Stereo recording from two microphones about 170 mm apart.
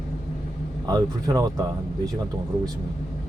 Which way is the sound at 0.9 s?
20° right (ahead or behind).